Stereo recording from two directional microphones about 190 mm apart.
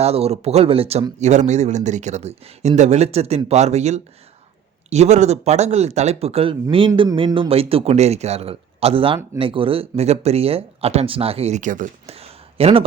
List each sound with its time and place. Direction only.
0.0 s speech: 35° right (ahead or behind)